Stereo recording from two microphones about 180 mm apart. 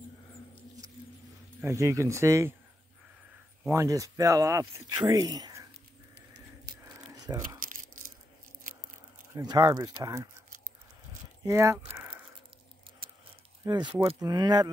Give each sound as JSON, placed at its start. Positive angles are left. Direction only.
{"t": 1.6, "sound": "speech", "side_deg": -15}
{"t": 3.6, "sound": "speech", "side_deg": -15}
{"t": 7.1, "sound": "biting", "side_deg": -20}
{"t": 9.3, "sound": "speech", "side_deg": -20}
{"t": 11.4, "sound": "speech", "side_deg": -15}
{"t": 13.0, "sound": "a sound", "side_deg": -30}
{"t": 13.7, "sound": "speech", "side_deg": -25}